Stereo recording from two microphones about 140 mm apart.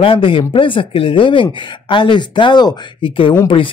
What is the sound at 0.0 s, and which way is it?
Speech, 40° left (ahead or behind).